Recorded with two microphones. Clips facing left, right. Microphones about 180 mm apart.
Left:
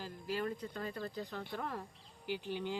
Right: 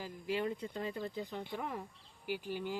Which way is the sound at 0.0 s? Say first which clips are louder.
Right 2 dB; 15° right (ahead or behind).